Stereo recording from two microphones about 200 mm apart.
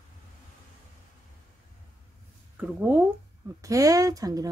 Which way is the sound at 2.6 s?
10° right (ahead or behind).